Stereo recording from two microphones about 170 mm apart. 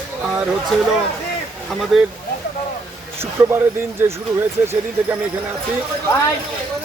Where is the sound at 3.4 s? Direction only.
15° right (ahead or behind).